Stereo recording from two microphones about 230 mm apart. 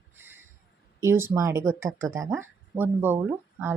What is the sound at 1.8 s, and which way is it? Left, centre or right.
Speech, right.